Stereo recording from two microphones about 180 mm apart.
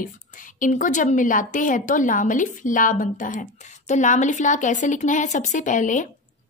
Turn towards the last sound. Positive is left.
turn(degrees=45)  # may be behind; listen again after turning